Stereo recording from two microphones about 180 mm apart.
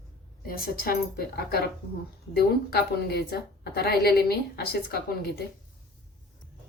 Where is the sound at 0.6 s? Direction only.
60° left (ahead or behind).